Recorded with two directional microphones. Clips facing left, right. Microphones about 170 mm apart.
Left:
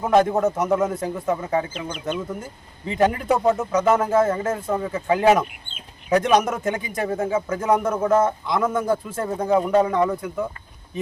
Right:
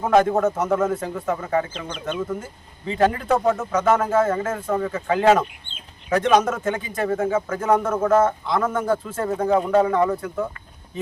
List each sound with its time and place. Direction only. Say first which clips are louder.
0.2 s a man's voice: even; 10° left (ahead or behind)